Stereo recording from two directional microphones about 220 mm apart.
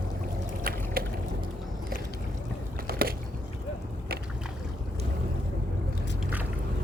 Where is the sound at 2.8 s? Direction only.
40° right (ahead or behind).